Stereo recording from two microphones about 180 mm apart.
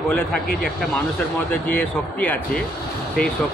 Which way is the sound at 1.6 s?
10° left (ahead or behind).